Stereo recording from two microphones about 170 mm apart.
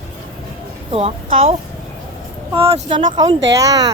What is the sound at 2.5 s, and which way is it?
Speech, 35° right (ahead or behind).